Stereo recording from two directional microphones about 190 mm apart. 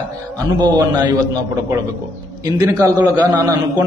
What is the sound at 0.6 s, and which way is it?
Speech, 20° right (ahead or behind).